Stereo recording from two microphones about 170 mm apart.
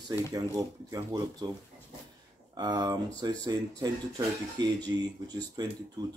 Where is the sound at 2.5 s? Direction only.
25° right (ahead or behind).